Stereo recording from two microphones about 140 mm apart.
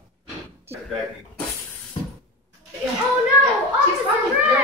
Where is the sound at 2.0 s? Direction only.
40° left (ahead or behind).